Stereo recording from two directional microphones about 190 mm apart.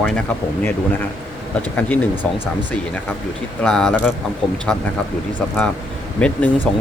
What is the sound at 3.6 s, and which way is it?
Speech, 5° left (ahead or behind).